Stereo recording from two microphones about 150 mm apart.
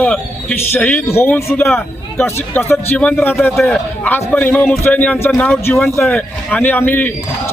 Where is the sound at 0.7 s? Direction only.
10° left (ahead or behind).